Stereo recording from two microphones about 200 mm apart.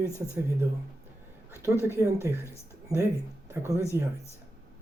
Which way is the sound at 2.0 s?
15° right (ahead or behind).